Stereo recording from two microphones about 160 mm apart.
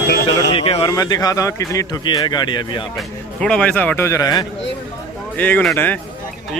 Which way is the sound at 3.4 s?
5° left (ahead or behind).